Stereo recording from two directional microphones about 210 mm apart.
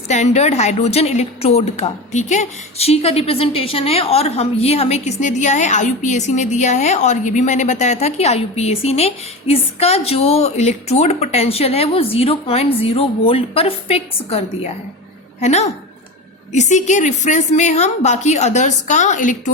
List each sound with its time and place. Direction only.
0.1 s a woman's voice: 30° left (ahead or behind)